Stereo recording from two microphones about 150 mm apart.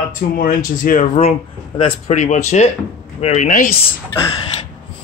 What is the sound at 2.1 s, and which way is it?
Speech, 50° left (ahead or behind).